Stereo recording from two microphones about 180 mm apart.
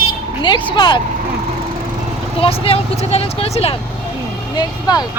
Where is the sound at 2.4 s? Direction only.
30° left (ahead or behind).